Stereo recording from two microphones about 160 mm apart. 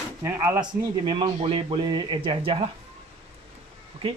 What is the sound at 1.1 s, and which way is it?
Speech, 30° right (ahead or behind).